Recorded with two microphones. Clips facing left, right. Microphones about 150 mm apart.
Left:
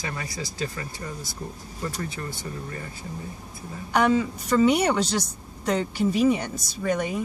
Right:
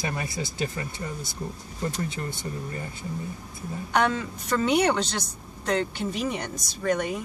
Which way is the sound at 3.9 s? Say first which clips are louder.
Left 4 dB; 5° left (ahead or behind).